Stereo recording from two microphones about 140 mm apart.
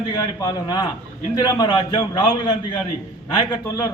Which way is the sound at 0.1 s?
30° left (ahead or behind).